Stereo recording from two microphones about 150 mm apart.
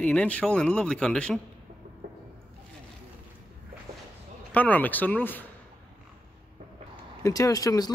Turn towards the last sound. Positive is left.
turn(degrees=25)  # may be behind; listen again after turning